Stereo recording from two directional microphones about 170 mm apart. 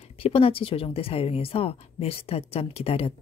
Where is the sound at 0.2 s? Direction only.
35° left (ahead or behind).